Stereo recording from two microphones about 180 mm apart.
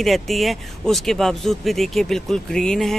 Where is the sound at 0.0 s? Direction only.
Centre (ahead or behind).